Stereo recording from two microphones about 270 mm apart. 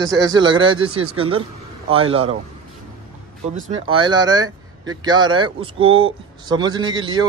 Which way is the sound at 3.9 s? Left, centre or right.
Centre.